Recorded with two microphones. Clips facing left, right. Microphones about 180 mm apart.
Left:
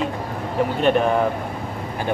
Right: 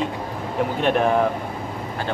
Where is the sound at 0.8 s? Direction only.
Centre (ahead or behind).